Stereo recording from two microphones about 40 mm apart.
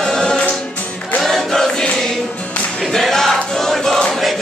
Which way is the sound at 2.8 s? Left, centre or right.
Centre.